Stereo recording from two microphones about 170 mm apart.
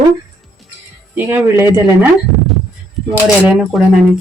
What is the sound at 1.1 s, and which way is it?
Speech, 10° right (ahead or behind).